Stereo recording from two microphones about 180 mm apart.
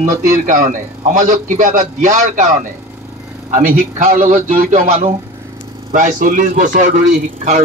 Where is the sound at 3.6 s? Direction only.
45° right (ahead or behind).